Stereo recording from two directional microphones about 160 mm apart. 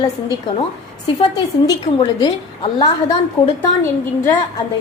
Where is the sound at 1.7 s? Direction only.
25° left (ahead or behind).